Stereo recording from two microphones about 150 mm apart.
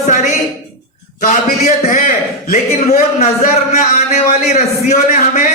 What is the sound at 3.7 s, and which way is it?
A man's voice, 50° left (ahead or behind).